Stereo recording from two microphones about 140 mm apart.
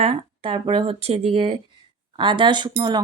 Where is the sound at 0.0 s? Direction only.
40° right (ahead or behind).